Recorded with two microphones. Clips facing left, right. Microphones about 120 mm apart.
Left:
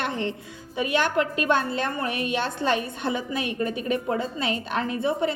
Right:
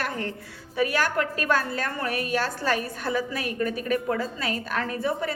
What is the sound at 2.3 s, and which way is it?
A woman's voice, 25° left (ahead or behind).